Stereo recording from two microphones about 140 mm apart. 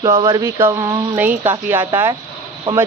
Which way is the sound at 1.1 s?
15° right (ahead or behind).